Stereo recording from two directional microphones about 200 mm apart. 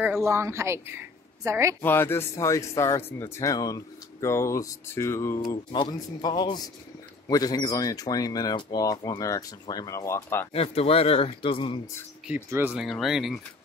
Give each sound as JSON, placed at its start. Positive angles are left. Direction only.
{"t": 0.2, "sound": "a woman's voice", "side_deg": -15}
{"t": 1.8, "sound": "speech", "side_deg": 10}
{"t": 10.5, "sound": "speech", "side_deg": 30}
{"t": 12.3, "sound": "speech", "side_deg": -10}